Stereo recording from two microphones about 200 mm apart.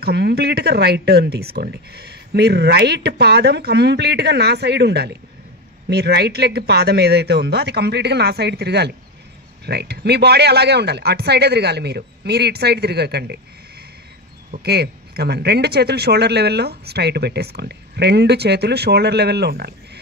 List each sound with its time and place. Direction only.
0.0 s speech: 55° right (ahead or behind)
14.5 s speech: 55° right (ahead or behind)